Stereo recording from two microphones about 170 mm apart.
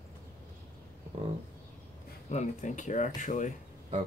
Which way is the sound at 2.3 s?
45° left (ahead or behind).